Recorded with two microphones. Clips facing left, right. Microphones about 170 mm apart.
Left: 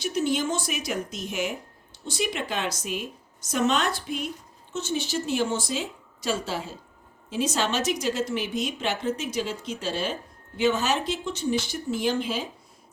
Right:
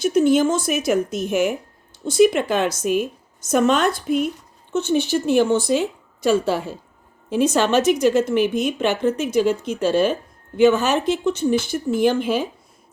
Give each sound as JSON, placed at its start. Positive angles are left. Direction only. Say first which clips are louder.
{"t": 0.0, "sound": "a woman's voice", "louder": "right 10 dB", "side_deg": -50}